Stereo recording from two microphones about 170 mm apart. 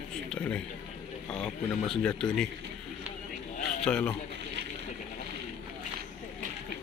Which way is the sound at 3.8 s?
5° left (ahead or behind).